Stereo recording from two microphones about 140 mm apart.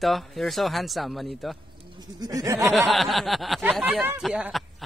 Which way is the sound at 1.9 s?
30° right (ahead or behind).